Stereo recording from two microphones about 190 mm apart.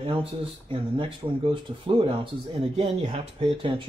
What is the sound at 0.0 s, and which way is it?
Speech, 30° right (ahead or behind).